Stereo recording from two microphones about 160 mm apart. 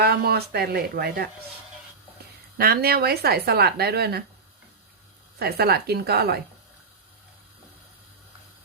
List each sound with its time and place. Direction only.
0.0 s speech: 75° right (ahead or behind)
2.6 s speech: 70° right (ahead or behind)
5.4 s a woman's voice: 80° right